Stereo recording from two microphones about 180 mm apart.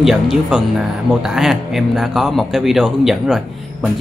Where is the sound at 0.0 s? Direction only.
Centre (ahead or behind).